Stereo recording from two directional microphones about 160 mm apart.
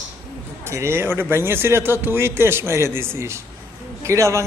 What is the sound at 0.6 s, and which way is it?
A man's voice, 15° right (ahead or behind).